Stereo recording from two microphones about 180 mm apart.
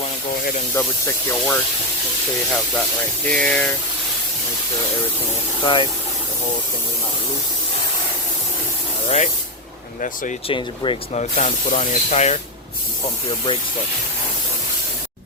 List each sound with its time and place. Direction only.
0.7 s speech: 15° left (ahead or behind)
3.2 s speech: 5° left (ahead or behind)
5.6 s speech: 25° left (ahead or behind)
9.0 s speech: 40° left (ahead or behind)
10.5 s speech: 30° left (ahead or behind)
11.2 s speech: 40° left (ahead or behind)